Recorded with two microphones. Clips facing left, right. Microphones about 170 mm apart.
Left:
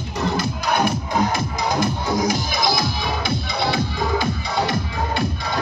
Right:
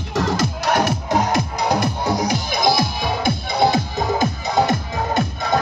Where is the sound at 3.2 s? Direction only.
45° right (ahead or behind).